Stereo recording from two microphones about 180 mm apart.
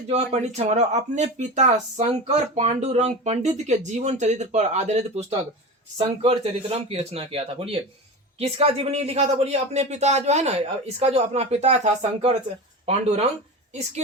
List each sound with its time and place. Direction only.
0.1 s speech: 35° right (ahead or behind)